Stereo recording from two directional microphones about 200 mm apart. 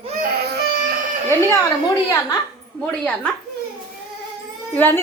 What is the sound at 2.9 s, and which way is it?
Speech, 5° left (ahead or behind).